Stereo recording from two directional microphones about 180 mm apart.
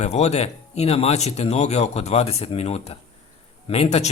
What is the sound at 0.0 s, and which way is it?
Speech, 40° left (ahead or behind).